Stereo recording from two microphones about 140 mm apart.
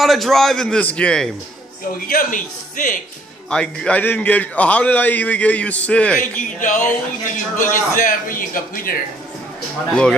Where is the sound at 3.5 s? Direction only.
5° left (ahead or behind).